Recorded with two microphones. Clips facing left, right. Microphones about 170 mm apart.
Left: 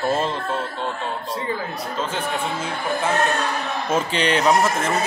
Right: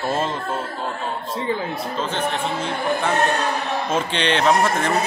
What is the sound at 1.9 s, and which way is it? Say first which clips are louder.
Speech: left 1 dB; 5° left (ahead or behind).